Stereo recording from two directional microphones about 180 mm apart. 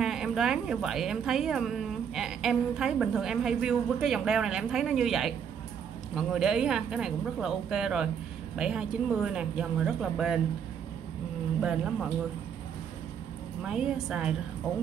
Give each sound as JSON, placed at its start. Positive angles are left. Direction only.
{"t": 0.0, "sound": "a woman's voice", "side_deg": -5}
{"t": 11.6, "sound": "a woman's voice", "side_deg": -5}
{"t": 13.6, "sound": "a woman's voice", "side_deg": -5}